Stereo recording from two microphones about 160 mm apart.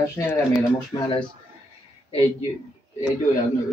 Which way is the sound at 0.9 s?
25° left (ahead or behind).